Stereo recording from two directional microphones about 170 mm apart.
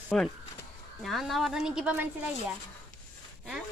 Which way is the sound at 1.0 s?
Centre (ahead or behind).